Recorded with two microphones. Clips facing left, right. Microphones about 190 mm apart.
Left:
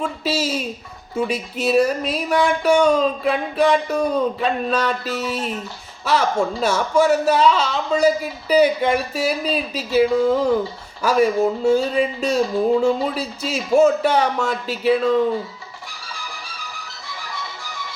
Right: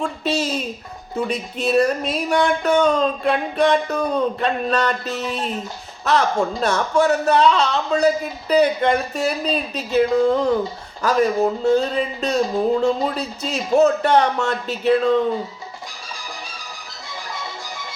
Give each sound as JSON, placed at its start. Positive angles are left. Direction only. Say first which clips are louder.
{"t": 0.0, "sound": "speech", "louder": "even", "side_deg": 5}